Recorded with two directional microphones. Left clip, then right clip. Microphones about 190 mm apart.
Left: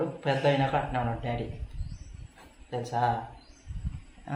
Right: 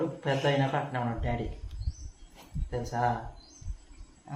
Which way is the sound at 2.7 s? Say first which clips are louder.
Left 2 dB; 10° left (ahead or behind).